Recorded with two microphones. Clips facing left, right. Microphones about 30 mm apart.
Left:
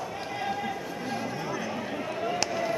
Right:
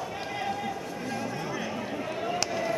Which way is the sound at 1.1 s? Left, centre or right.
Centre.